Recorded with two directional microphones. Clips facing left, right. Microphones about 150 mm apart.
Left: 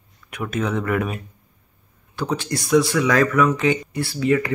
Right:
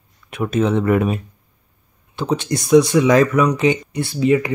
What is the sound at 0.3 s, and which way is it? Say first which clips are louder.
Speech: right 6 dB; 25° right (ahead or behind).